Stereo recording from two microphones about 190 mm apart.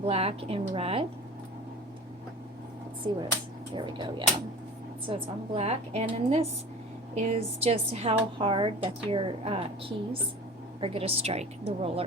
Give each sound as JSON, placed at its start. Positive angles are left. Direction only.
{"t": 0.0, "sound": "a woman's voice", "side_deg": -30}
{"t": 3.1, "sound": "a woman's voice", "side_deg": -25}